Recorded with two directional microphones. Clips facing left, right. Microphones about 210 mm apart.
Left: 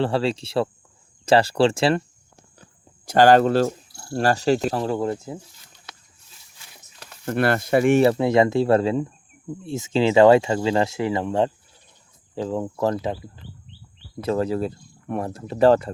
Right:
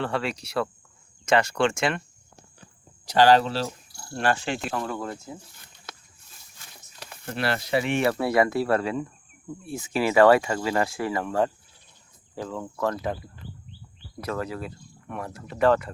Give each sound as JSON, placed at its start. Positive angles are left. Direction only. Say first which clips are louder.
{"t": 0.0, "sound": "speech", "louder": "left 6 dB", "side_deg": 30}
{"t": 3.1, "sound": "speech", "louder": "left 4 dB", "side_deg": 50}
{"t": 4.1, "sound": "speech", "louder": "left 6 dB", "side_deg": 40}
{"t": 5.5, "sound": "a sound", "louder": "even", "side_deg": -55}
{"t": 7.3, "sound": "speech", "louder": "left 7 dB", "side_deg": 50}
{"t": 8.0, "sound": "speech", "louder": "left 5 dB", "side_deg": 20}